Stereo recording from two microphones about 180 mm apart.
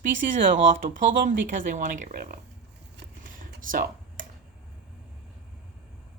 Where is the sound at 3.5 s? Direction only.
50° right (ahead or behind).